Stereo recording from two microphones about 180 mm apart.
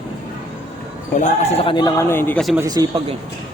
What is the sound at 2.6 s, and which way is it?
Speech, 20° right (ahead or behind).